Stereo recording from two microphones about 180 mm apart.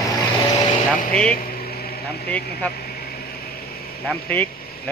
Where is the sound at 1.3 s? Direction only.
60° left (ahead or behind).